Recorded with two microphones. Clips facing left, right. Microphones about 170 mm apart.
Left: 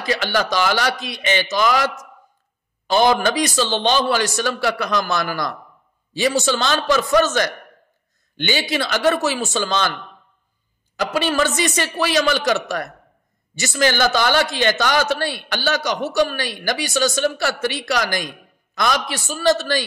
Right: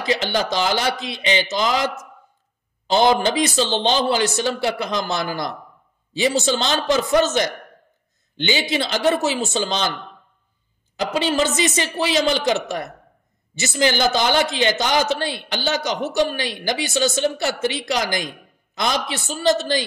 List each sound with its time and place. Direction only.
0.0 s a man's voice: 20° right (ahead or behind)
2.9 s a man's voice: 20° right (ahead or behind)
11.0 s a man's voice: 20° right (ahead or behind)